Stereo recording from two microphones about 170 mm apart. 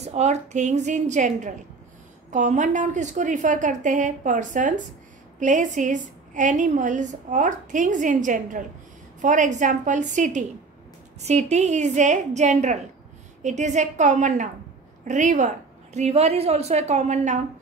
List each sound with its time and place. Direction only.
0.0 s a woman's voice: 40° right (ahead or behind)